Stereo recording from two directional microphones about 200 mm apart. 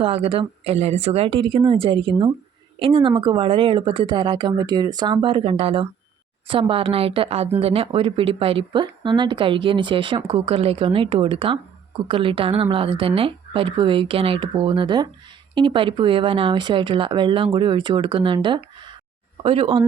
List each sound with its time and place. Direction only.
0.0 s speech: 30° right (ahead or behind)